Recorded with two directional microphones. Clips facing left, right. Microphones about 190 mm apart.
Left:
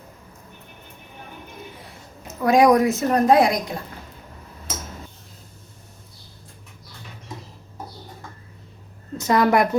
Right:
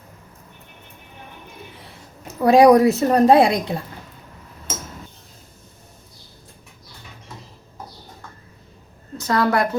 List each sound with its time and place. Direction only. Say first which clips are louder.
2.2 s a woman's voice: right 4 dB; 35° right (ahead or behind)
9.1 s a woman's voice: left 2 dB; 20° left (ahead or behind)